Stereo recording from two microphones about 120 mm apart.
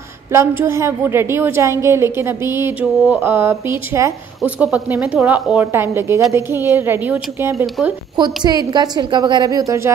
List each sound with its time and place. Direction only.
0.3 s a woman's voice: 20° right (ahead or behind)
4.6 s a woman's voice: 10° right (ahead or behind)
8.5 s a woman's voice: 35° right (ahead or behind)